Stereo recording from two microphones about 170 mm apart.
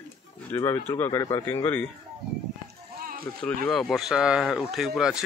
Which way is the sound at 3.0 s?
60° right (ahead or behind).